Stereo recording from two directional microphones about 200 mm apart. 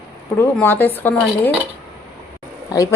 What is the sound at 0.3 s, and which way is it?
Speech, 10° left (ahead or behind).